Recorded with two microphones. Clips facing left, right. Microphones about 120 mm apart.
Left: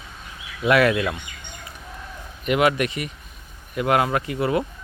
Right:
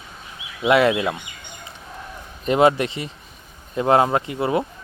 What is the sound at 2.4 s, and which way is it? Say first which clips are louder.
Speech: right 3 dB; 30° right (ahead or behind).